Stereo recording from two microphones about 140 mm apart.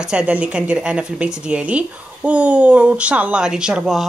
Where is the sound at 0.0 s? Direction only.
5° right (ahead or behind).